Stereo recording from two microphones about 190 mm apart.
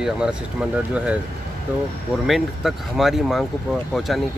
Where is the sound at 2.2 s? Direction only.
Centre (ahead or behind).